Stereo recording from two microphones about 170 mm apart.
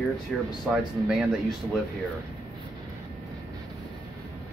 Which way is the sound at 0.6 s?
5° right (ahead or behind).